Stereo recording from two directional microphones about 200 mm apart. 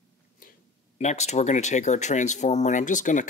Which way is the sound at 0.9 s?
35° left (ahead or behind).